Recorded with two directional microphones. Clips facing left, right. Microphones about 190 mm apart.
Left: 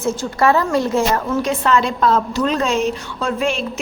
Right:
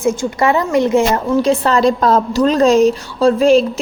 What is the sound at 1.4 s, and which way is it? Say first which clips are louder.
A woman's voice: right 6 dB; 35° right (ahead or behind).